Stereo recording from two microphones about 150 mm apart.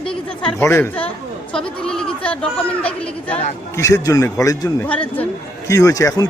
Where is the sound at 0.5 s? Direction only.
15° left (ahead or behind).